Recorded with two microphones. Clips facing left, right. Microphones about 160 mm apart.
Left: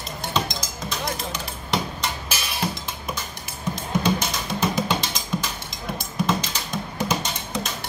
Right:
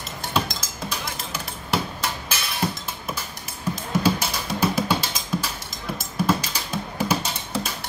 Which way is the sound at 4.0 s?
10° right (ahead or behind).